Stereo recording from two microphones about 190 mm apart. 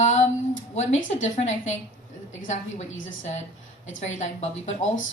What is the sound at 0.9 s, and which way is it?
Speech, 90° left.